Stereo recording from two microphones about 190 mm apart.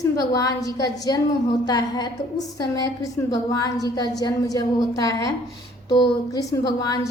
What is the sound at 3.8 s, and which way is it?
A woman's voice, 20° left (ahead or behind).